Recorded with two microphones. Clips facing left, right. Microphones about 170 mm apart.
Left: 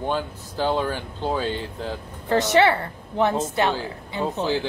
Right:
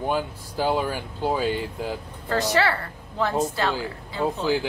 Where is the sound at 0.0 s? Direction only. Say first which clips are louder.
Even; 10° right (ahead or behind).